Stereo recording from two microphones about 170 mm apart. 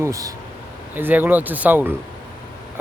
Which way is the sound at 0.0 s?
20° right (ahead or behind).